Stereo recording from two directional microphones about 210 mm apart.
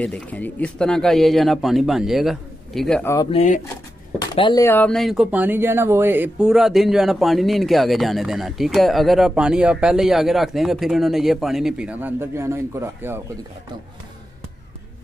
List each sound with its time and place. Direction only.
0.0 s speech: 5° left (ahead or behind)
3.3 s speech: 30° left (ahead or behind)
4.4 s speech: 20° left (ahead or behind); by 13.2 s 10° right (ahead or behind)